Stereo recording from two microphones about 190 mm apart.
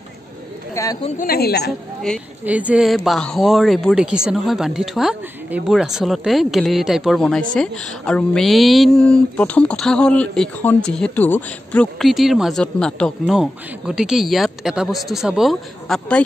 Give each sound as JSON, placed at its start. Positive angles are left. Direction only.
{"t": 0.8, "sound": "speech", "side_deg": 15}
{"t": 1.2, "sound": "a woman's voice", "side_deg": 55}
{"t": 2.1, "sound": "speech", "side_deg": 5}
{"t": 2.4, "sound": "speech", "side_deg": -10}